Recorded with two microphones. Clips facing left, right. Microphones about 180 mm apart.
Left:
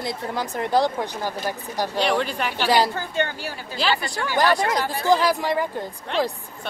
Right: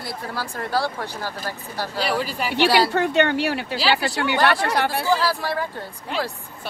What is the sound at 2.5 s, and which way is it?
A woman's voice, 70° right (ahead or behind).